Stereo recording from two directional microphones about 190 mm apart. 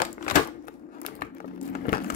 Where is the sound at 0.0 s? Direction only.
45° left (ahead or behind).